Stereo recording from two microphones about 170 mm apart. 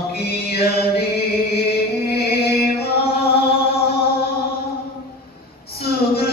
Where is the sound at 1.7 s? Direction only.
65° left (ahead or behind).